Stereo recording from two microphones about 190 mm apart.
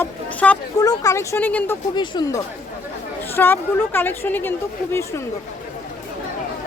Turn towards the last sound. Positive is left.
turn(degrees=15)  # may be behind; listen again after turning